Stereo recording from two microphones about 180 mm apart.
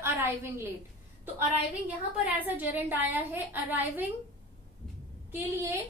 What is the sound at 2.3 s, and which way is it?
A woman's voice, 10° right (ahead or behind).